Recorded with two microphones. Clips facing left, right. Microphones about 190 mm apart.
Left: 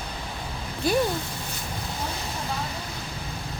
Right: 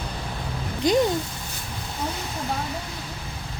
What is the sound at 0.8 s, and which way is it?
Speech, 20° right (ahead or behind).